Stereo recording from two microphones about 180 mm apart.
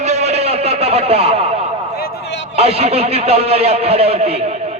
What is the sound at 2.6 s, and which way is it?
A man's voice, 35° right (ahead or behind).